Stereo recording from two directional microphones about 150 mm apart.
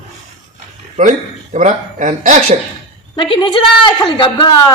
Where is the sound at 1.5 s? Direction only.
55° right (ahead or behind).